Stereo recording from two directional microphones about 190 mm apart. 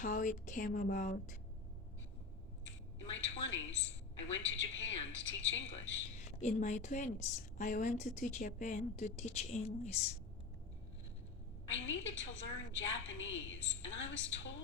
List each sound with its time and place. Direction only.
0.0 s speech: 45° left (ahead or behind)
2.6 s a sound: 75° left (ahead or behind)
3.4 s a woman's voice: 75° left (ahead or behind)
6.4 s a woman's voice: 40° left (ahead or behind)
11.7 s a woman's voice: 75° left (ahead or behind)